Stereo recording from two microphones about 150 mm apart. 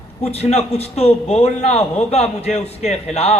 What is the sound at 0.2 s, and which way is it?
A man's voice, 45° left (ahead or behind).